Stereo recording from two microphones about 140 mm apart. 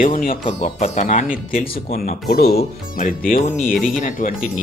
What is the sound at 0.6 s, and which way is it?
Speech, 55° left (ahead or behind).